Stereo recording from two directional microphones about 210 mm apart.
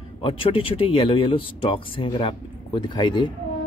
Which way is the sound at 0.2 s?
25° left (ahead or behind).